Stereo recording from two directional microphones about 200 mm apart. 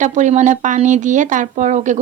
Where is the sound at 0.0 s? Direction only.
35° right (ahead or behind).